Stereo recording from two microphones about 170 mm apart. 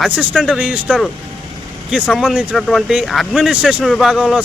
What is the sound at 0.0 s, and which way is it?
Speech, 5° right (ahead or behind).